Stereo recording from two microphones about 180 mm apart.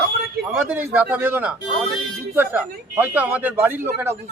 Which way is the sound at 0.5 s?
10° right (ahead or behind).